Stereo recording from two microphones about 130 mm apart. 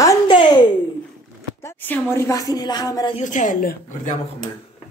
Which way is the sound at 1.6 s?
15° left (ahead or behind).